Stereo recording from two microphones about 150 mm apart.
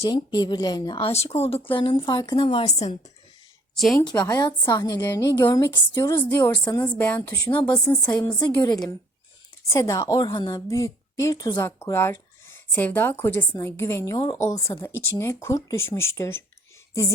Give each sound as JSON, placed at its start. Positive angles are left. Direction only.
{"t": 0.0, "sound": "a woman's voice", "side_deg": 30}
{"t": 3.9, "sound": "a woman's voice", "side_deg": 30}
{"t": 5.4, "sound": "a woman's voice", "side_deg": 30}
{"t": 7.5, "sound": "a woman's voice", "side_deg": 30}